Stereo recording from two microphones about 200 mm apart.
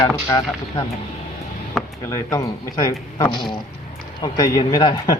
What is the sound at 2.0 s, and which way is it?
Speech, 15° left (ahead or behind).